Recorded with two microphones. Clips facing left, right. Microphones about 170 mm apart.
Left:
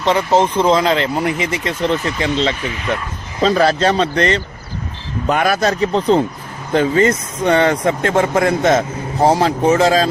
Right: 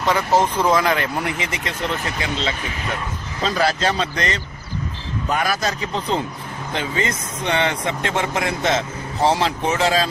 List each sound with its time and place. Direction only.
0.0 s speech: 25° left (ahead or behind)
5.2 s speech: 55° left (ahead or behind)
5.6 s speech: 35° left (ahead or behind)